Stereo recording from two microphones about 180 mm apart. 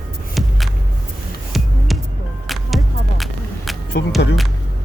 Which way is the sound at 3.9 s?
70° left (ahead or behind).